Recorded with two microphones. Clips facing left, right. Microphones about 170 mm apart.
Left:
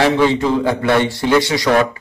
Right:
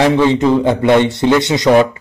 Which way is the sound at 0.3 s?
20° right (ahead or behind).